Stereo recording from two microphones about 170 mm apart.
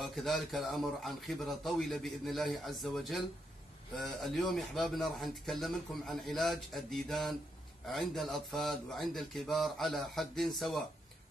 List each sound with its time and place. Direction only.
0.0 s speech: centre (ahead or behind)